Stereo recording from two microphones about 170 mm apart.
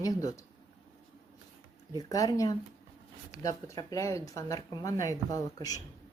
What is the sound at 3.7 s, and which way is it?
Speech, 20° left (ahead or behind).